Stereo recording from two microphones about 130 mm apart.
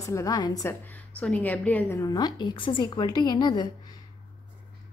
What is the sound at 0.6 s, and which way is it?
A woman's voice, 15° left (ahead or behind).